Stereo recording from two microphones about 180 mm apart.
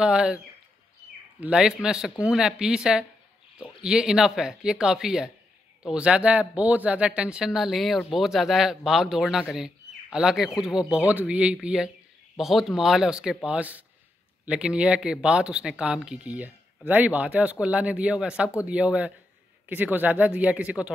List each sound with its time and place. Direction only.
0.0 s speech: 5° right (ahead or behind)
1.4 s speech: 5° right (ahead or behind)